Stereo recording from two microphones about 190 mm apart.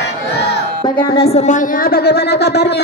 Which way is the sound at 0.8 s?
25° left (ahead or behind).